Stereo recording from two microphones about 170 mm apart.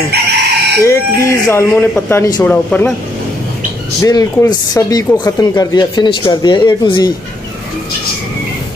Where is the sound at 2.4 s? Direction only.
10° left (ahead or behind).